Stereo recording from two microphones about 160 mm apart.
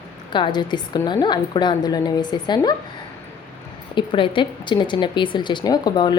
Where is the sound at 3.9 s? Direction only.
30° left (ahead or behind).